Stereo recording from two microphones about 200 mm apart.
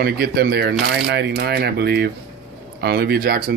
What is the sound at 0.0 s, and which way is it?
Speech, 50° right (ahead or behind).